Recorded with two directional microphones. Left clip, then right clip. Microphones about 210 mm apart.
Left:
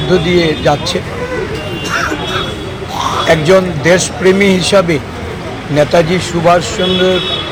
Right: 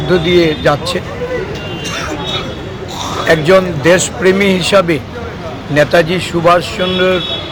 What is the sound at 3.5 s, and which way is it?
Speech, 25° right (ahead or behind).